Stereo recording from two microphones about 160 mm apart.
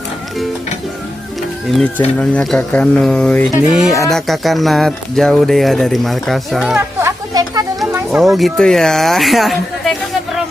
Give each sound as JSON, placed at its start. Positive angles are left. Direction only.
{"t": 1.7, "sound": "speech", "side_deg": 5}
{"t": 3.7, "sound": "speech", "side_deg": -5}
{"t": 7.0, "sound": "a sound", "side_deg": -20}
{"t": 8.2, "sound": "speech", "side_deg": 0}